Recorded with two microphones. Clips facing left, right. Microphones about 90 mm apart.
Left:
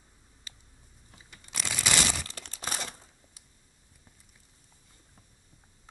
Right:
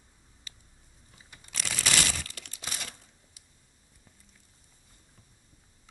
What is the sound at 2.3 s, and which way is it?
Crumpling, 35° left (ahead or behind).